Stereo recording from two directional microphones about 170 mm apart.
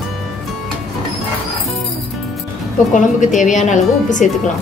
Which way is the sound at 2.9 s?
50° left (ahead or behind).